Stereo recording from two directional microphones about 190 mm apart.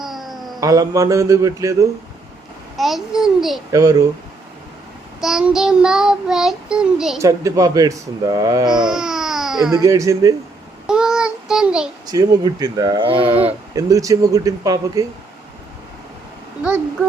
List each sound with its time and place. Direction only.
0.0 s cat: centre (ahead or behind)
0.6 s speech: 20° right (ahead or behind)
2.7 s child singing: centre (ahead or behind)
3.7 s speech: 15° right (ahead or behind)
5.2 s child singing: 5° right (ahead or behind)
7.2 s speech: 15° right (ahead or behind)
8.8 s baby cry: 5° right (ahead or behind)
9.7 s speech: 20° right (ahead or behind)
10.8 s child singing: 5° right (ahead or behind)
12.0 s speech: 20° right (ahead or behind)